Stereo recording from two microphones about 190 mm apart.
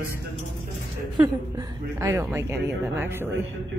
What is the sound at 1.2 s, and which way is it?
Speech, 20° right (ahead or behind).